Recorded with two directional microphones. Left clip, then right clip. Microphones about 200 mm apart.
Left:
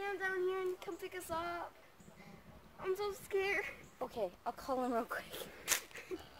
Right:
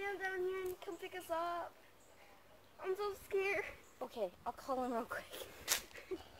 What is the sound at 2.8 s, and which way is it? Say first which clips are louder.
Speech: left 2 dB; 45° left (ahead or behind).